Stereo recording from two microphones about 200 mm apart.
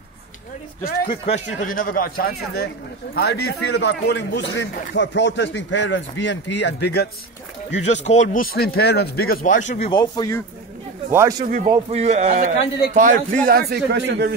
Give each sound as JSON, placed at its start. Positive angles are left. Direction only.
{"t": 1.0, "sound": "a man's voice", "side_deg": 30}
{"t": 7.9, "sound": "speech", "side_deg": 35}
{"t": 11.1, "sound": "speech", "side_deg": -15}
{"t": 11.4, "sound": "speech", "side_deg": -40}
{"t": 13.5, "sound": "a man's voice", "side_deg": -50}